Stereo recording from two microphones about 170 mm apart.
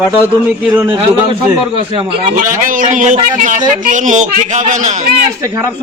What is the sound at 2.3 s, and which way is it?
A man's voice, 50° right (ahead or behind).